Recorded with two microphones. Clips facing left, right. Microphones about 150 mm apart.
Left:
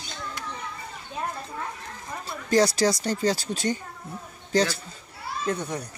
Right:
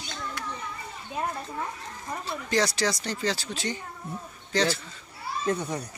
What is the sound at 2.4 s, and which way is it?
Speech, 40° left (ahead or behind).